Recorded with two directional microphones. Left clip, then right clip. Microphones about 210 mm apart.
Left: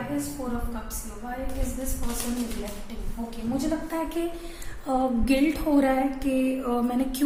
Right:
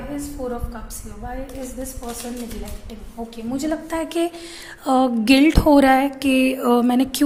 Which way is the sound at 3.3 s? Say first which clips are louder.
Right 4 dB; 50° right (ahead or behind).